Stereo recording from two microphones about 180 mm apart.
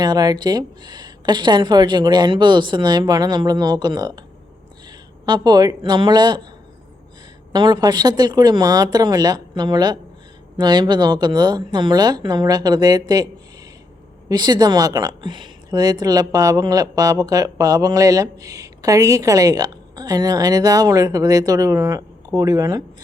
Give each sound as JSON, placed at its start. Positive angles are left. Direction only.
{"t": 0.0, "sound": "speech", "side_deg": -20}
{"t": 7.5, "sound": "speech", "side_deg": -25}
{"t": 14.3, "sound": "speech", "side_deg": -25}